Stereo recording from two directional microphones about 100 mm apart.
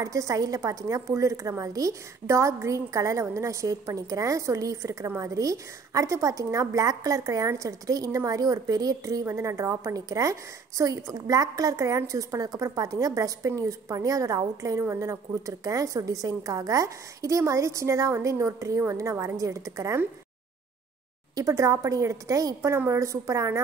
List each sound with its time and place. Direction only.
0.0 s a woman's voice: 35° right (ahead or behind)
21.4 s a woman's voice: 30° right (ahead or behind)